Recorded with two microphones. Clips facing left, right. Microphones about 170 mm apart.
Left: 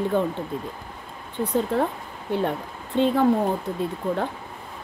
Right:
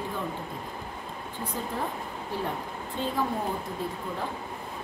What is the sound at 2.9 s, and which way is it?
Speech, 75° left (ahead or behind).